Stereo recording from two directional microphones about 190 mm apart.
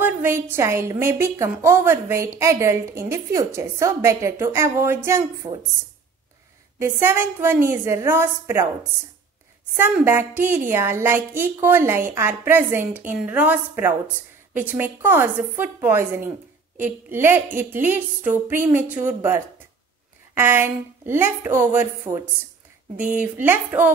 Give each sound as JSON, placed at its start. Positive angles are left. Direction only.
{"t": 0.0, "sound": "a woman's voice", "side_deg": -10}
{"t": 6.8, "sound": "a woman's voice", "side_deg": -10}
{"t": 9.8, "sound": "a woman's voice", "side_deg": -10}